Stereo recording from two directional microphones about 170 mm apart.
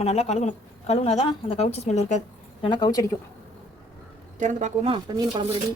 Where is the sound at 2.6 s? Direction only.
25° left (ahead or behind).